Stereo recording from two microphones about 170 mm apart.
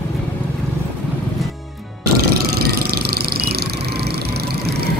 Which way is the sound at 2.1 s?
65° right (ahead or behind).